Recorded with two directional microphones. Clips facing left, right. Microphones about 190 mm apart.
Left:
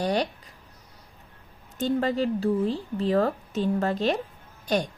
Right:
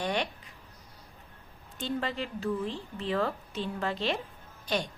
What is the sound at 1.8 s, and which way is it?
A woman's voice, 40° left (ahead or behind).